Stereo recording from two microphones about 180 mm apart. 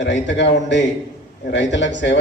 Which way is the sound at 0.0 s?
80° left.